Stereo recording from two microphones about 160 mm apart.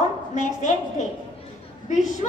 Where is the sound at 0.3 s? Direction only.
45° left (ahead or behind).